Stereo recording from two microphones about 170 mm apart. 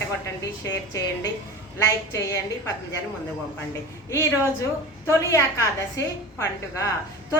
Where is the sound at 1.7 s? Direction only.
20° left (ahead or behind).